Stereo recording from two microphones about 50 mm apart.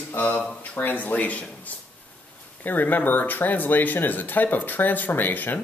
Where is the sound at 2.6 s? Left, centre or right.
Left.